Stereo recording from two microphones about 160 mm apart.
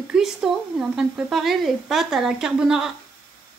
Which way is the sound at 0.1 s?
5° right (ahead or behind).